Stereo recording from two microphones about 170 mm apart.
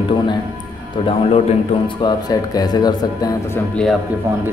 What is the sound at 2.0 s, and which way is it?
Speech, 25° left (ahead or behind).